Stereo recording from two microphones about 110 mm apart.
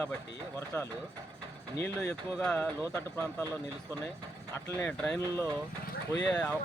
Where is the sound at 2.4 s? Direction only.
10° left (ahead or behind).